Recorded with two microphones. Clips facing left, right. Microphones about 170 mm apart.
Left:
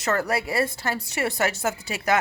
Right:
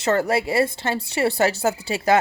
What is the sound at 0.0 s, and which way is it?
A woman's voice, 30° right (ahead or behind).